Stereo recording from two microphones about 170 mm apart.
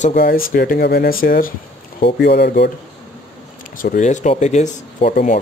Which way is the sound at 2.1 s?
70° left (ahead or behind).